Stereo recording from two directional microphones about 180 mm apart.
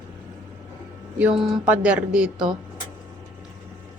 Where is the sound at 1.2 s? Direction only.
5° right (ahead or behind).